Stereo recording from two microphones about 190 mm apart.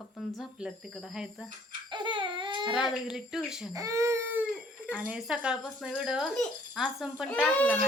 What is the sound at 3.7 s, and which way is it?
Speech, 15° right (ahead or behind).